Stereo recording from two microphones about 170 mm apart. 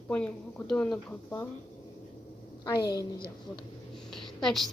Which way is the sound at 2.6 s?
20° left (ahead or behind).